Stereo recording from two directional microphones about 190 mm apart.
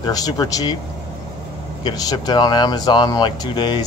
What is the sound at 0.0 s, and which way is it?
Speech, 20° left (ahead or behind).